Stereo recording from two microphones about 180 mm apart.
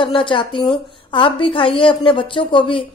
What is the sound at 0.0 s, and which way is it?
A woman's voice, 30° left (ahead or behind).